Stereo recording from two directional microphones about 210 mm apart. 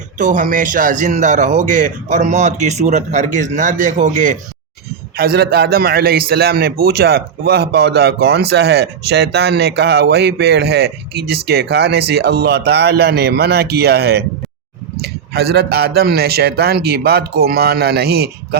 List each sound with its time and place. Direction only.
0.2 s speech: 35° right (ahead or behind)
5.1 s a man's voice: 45° right (ahead or behind)
14.9 s a sound: 50° right (ahead or behind)
16.0 s a man's voice: 50° right (ahead or behind)